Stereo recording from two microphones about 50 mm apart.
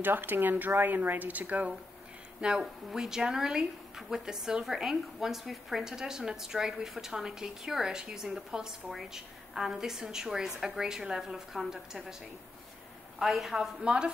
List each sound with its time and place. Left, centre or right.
0.0 s a woman's voice: right
2.6 s speech: centre
13.2 s a woman's voice: centre
13.8 s speech: centre